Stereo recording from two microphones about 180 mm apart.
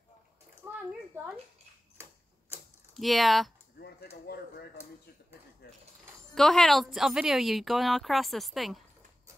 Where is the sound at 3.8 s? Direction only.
60° left (ahead or behind).